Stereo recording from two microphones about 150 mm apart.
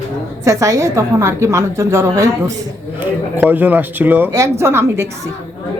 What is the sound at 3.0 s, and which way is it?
A man's voice, 10° right (ahead or behind).